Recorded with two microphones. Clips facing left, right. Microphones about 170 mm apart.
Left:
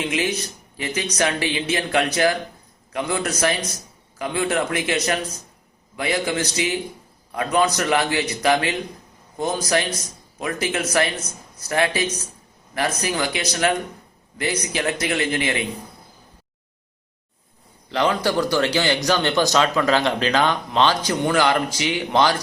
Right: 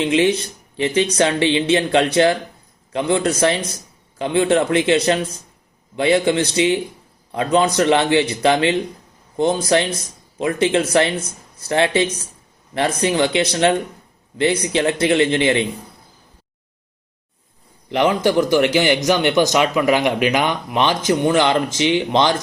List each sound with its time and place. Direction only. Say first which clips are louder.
0.0 s a man's voice: right 7 dB; 25° right (ahead or behind)
17.8 s a man's voice: right 4 dB; 20° right (ahead or behind)